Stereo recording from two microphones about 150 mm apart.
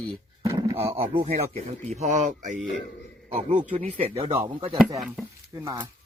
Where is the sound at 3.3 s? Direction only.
40° right (ahead or behind).